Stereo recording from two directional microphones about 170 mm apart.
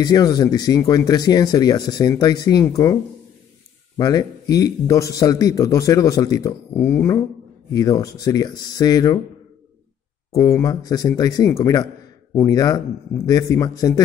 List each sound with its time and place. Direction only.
0.0 s a man's voice: 25° left (ahead or behind)
4.0 s a man's voice: 20° left (ahead or behind)
10.3 s a man's voice: 20° left (ahead or behind)